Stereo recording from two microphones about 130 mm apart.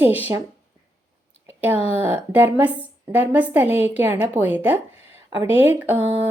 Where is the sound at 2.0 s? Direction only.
15° right (ahead or behind).